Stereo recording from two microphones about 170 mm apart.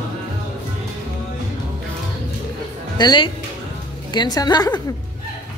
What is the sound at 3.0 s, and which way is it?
A woman's voice, 25° left (ahead or behind).